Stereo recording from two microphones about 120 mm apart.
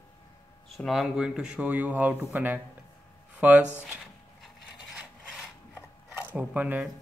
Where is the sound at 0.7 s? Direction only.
Centre (ahead or behind).